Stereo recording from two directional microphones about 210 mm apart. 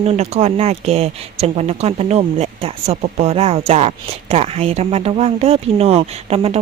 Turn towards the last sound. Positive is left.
turn(degrees=-25)  # may be behind; listen again after turning